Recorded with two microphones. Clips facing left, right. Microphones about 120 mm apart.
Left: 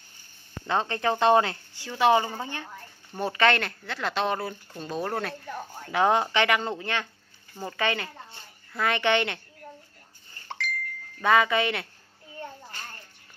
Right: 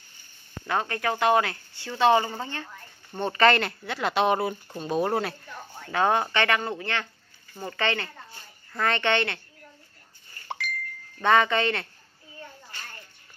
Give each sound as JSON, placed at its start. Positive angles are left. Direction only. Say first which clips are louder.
{"t": 0.7, "sound": "speech", "louder": "left 1 dB", "side_deg": 25}
{"t": 1.8, "sound": "a woman's voice", "louder": "right 1 dB", "side_deg": 15}
{"t": 3.2, "sound": "speech", "louder": "right 2 dB", "side_deg": 5}
{"t": 5.9, "sound": "a woman's voice", "louder": "left 1 dB", "side_deg": 15}
{"t": 11.2, "sound": "a woman's voice", "louder": "right 1 dB", "side_deg": 5}